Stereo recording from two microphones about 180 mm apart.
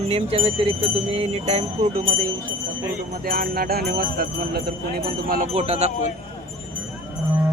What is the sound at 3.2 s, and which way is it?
Speech, 55° right (ahead or behind).